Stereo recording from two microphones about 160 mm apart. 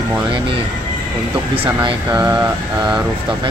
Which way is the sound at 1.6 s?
35° right (ahead or behind).